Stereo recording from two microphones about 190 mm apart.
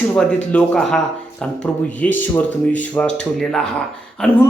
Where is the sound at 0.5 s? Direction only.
5° left (ahead or behind).